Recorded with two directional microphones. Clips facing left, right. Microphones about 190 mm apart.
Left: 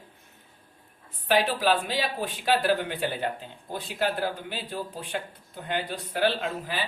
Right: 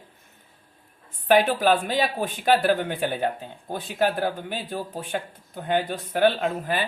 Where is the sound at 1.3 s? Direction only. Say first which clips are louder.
Right 4 dB; 50° right (ahead or behind).